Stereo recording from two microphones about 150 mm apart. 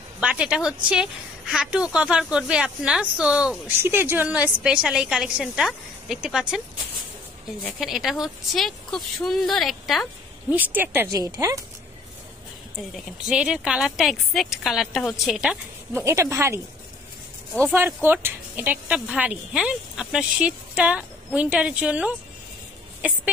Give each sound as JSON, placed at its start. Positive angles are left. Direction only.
{"t": 0.2, "sound": "speech", "side_deg": -5}
{"t": 7.6, "sound": "speech", "side_deg": 0}
{"t": 10.5, "sound": "speech", "side_deg": -10}
{"t": 11.1, "sound": "speech", "side_deg": -25}
{"t": 13.3, "sound": "speech", "side_deg": -5}
{"t": 15.9, "sound": "speech", "side_deg": -20}
{"t": 17.7, "sound": "speech", "side_deg": -10}